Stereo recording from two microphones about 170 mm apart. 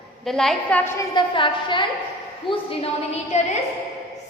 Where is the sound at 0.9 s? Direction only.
25° left (ahead or behind).